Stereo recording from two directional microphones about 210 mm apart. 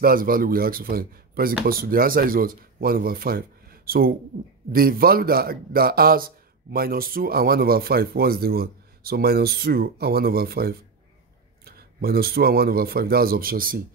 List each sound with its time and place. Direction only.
0.0 s a man's voice: 45° right (ahead or behind)